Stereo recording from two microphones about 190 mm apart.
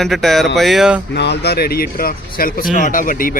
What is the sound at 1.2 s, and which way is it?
Speech, 60° left (ahead or behind).